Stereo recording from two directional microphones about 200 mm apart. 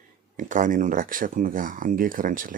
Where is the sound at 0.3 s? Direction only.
40° right (ahead or behind).